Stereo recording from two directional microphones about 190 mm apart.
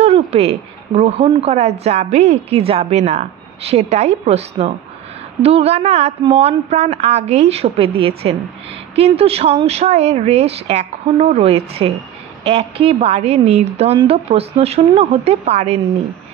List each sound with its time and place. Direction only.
0.0 s speech: 35° right (ahead or behind)